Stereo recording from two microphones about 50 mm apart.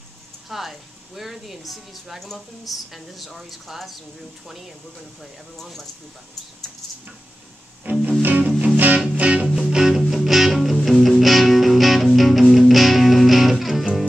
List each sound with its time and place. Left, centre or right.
0.5 s speech: centre
5.2 s speech: centre
7.8 s music: right
9.0 s music: right
9.6 s music: centre